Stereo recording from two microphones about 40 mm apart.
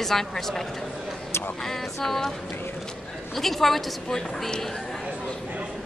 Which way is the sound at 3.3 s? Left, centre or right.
Centre.